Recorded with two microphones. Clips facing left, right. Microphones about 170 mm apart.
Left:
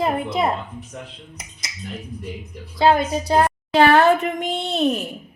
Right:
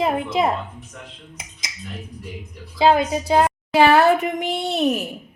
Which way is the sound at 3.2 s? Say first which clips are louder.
Even; 5° right (ahead or behind).